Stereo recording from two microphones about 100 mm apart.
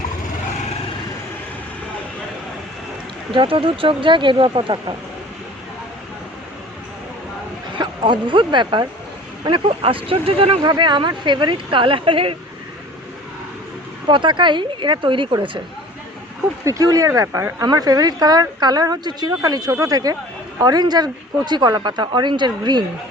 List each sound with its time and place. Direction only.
3.3 s speech: 60° right (ahead or behind)
7.8 s speech: 50° right (ahead or behind)
9.5 s speech: 65° right (ahead or behind)
10.6 s speech: 50° right (ahead or behind)
14.1 s speech: 50° right (ahead or behind)
16.6 s speech: 35° right (ahead or behind)